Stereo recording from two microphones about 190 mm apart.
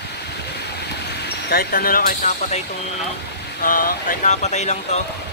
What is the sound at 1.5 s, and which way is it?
Speech, 50° left (ahead or behind).